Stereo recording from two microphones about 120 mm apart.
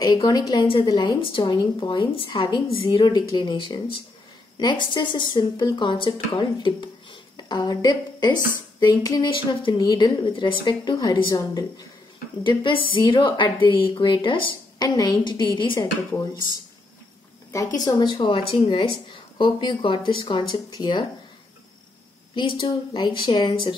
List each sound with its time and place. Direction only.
0.0 s speech: 35° left (ahead or behind)
9.2 s speech: 45° left (ahead or behind)
12.4 s a woman's voice: 45° left (ahead or behind)
17.5 s speech: 30° left (ahead or behind)
22.3 s speech: 45° left (ahead or behind)